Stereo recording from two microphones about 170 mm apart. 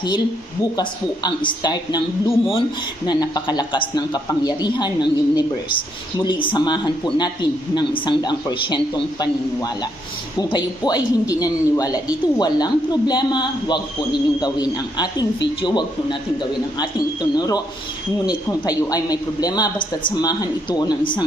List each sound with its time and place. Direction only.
0.8 s speech: 25° left (ahead or behind)